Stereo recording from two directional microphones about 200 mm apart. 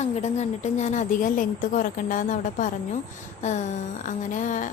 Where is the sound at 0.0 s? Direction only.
35° left (ahead or behind).